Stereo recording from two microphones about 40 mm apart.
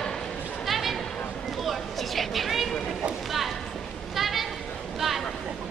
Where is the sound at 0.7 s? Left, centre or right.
Centre.